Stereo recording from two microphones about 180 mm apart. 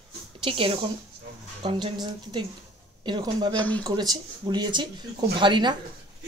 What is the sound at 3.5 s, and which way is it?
Speech, 10° left (ahead or behind).